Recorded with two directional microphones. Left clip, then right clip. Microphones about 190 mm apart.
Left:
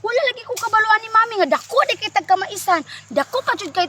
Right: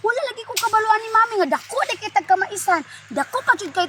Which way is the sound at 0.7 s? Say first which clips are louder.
Left 3 dB; 20° left (ahead or behind).